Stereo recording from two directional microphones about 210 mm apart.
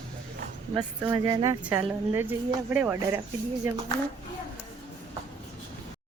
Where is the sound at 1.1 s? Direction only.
15° right (ahead or behind).